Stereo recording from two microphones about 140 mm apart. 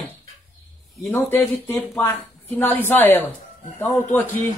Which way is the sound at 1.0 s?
20° left (ahead or behind).